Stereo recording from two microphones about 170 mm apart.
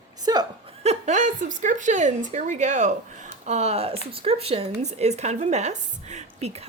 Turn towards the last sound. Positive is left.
turn(degrees=-40)  # may be behind; listen again after turning